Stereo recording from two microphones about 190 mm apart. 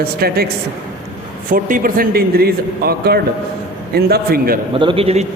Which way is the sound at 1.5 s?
45° right (ahead or behind).